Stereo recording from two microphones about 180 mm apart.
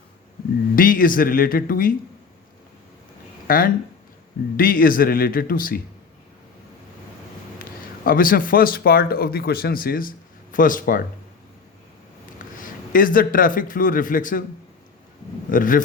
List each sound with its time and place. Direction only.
0.8 s speech: 50° left (ahead or behind)
3.4 s speech: 55° left (ahead or behind)
7.6 s a man's voice: 50° left (ahead or behind)
12.9 s speech: 50° left (ahead or behind)
15.4 s speech: 50° left (ahead or behind)